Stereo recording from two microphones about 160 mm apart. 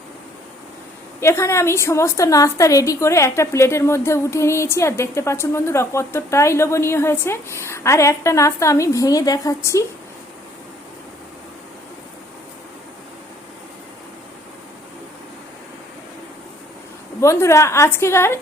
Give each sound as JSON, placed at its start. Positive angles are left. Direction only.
{"t": 1.2, "sound": "a woman's voice", "side_deg": 15}
{"t": 17.2, "sound": "a woman's voice", "side_deg": 15}